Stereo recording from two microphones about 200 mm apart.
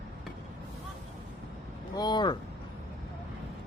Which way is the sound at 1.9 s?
20° left (ahead or behind).